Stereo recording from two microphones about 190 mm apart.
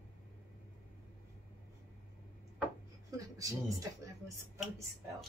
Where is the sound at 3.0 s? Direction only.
20° right (ahead or behind).